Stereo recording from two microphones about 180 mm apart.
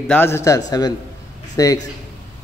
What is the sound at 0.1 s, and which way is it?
A man's voice, 15° left (ahead or behind).